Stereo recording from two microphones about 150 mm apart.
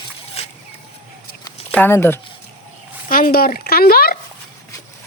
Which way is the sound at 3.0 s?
70° left (ahead or behind).